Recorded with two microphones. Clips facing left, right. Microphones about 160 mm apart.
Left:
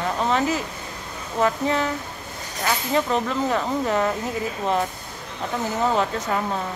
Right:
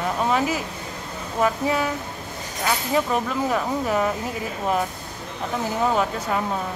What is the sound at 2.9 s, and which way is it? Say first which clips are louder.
Speech: left 1 dB; 5° right (ahead or behind).